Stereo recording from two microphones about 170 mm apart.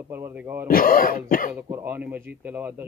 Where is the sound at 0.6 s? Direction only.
55° left (ahead or behind).